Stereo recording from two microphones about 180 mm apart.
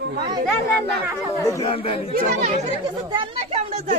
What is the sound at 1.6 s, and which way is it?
Speech, 30° left (ahead or behind).